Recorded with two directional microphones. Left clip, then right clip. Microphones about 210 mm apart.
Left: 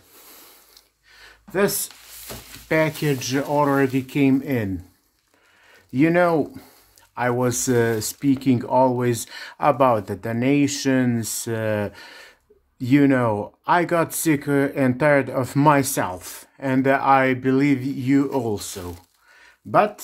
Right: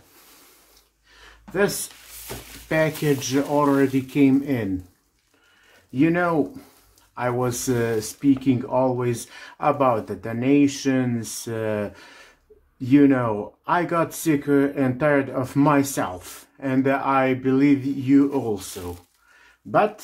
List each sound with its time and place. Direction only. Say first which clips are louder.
2.7 s speech: left 1 dB; 30° left (ahead or behind)
5.9 s speech: left 3 dB; 40° left (ahead or behind)